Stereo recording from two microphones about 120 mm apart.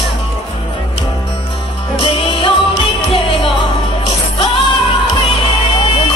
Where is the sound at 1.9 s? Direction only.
45° left (ahead or behind).